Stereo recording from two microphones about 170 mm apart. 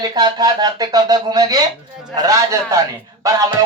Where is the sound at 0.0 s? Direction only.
25° right (ahead or behind).